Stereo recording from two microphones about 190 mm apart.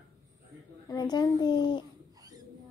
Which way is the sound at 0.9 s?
20° left (ahead or behind).